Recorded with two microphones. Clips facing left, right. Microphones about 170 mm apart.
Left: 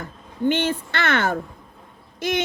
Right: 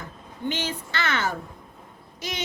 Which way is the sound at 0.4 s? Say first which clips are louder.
Left 8 dB; 55° left (ahead or behind).